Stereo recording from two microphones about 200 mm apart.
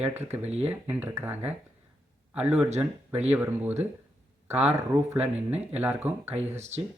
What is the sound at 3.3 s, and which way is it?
Speech, 10° right (ahead or behind).